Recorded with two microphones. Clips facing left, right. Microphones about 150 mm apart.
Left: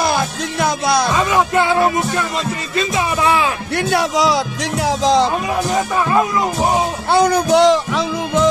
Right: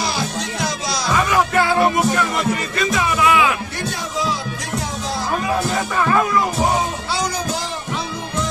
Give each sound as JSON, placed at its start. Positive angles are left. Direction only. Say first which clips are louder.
{"t": 0.0, "sound": "music", "louder": "left 5 dB", "side_deg": 55}
{"t": 1.1, "sound": "music", "louder": "left 2 dB", "side_deg": 20}
{"t": 3.9, "sound": "music", "louder": "left 10 dB", "side_deg": 80}
{"t": 6.0, "sound": "music", "louder": "left 1 dB", "side_deg": 20}
{"t": 7.1, "sound": "music", "louder": "left 10 dB", "side_deg": 55}